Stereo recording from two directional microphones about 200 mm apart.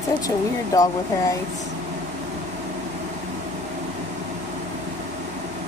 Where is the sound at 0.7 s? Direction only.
15° left (ahead or behind).